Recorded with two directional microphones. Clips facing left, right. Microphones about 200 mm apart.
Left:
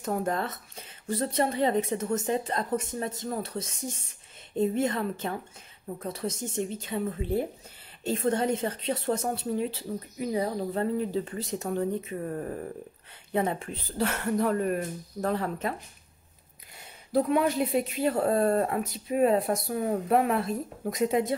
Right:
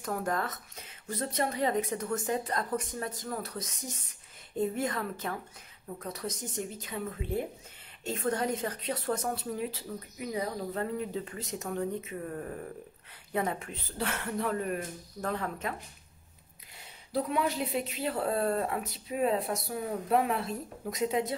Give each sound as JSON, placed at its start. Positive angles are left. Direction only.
{"t": 0.0, "sound": "a woman's voice", "side_deg": 25}
{"t": 17.1, "sound": "speech", "side_deg": 50}